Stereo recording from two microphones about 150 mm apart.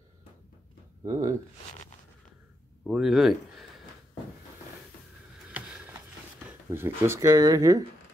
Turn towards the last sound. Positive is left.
turn(degrees=-25)  # may be behind; listen again after turning